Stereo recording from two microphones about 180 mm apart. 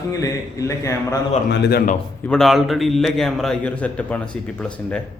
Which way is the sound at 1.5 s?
70° left (ahead or behind).